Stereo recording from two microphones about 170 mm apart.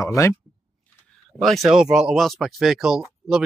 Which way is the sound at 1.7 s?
5° right (ahead or behind).